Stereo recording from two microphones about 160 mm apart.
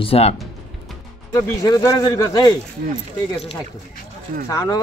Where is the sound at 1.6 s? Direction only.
25° left (ahead or behind).